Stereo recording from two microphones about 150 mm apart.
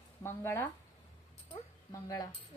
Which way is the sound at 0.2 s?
15° left (ahead or behind).